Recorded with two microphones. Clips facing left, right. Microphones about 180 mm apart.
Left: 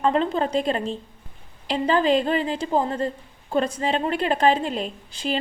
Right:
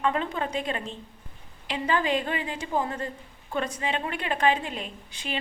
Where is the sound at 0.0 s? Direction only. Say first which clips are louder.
Left 6 dB; 30° left (ahead or behind).